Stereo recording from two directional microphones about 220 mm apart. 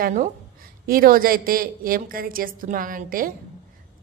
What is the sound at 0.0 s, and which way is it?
A woman's voice, 35° right (ahead or behind).